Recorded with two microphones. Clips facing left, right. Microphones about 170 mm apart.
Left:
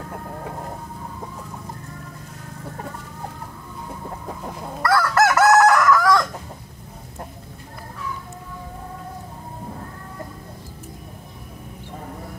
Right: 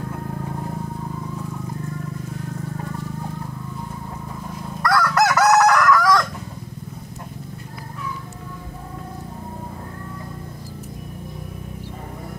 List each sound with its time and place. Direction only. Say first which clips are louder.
4.8 s chicken: left 1 dB; centre (ahead or behind)